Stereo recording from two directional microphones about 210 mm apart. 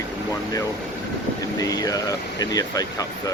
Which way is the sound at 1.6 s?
15° left (ahead or behind).